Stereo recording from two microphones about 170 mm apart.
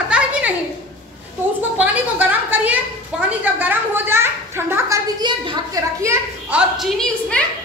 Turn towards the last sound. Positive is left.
turn(degrees=5)  # may be behind; listen again after turning